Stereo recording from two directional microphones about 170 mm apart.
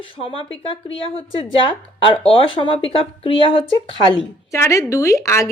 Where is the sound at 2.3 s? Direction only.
30° left (ahead or behind).